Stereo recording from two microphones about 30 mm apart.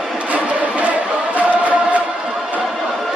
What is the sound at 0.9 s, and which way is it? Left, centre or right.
Chant, right.